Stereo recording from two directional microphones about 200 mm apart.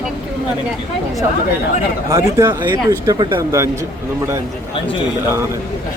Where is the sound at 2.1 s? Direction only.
20° right (ahead or behind).